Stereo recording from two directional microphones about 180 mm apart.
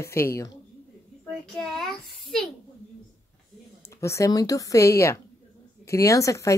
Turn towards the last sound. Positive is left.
turn(degrees=15)  # may be behind; listen again after turning